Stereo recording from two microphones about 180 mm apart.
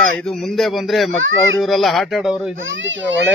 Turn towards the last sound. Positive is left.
turn(degrees=-90)